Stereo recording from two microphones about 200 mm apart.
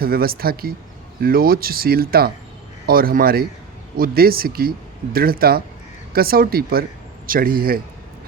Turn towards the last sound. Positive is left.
turn(degrees=-45)  # may be behind; listen again after turning